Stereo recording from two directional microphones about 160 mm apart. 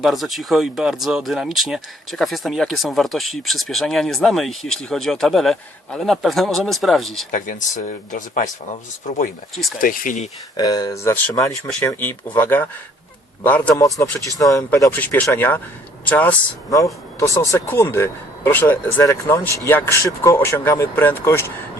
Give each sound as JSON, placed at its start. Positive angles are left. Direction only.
{"t": 0.0, "sound": "speech", "side_deg": 0}
{"t": 7.3, "sound": "speech", "side_deg": 55}
{"t": 10.6, "sound": "speech", "side_deg": 25}